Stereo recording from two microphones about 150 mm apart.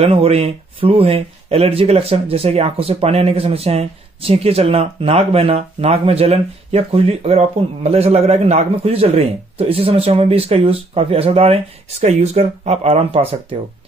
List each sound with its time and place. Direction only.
0.0 s speech: 40° right (ahead or behind)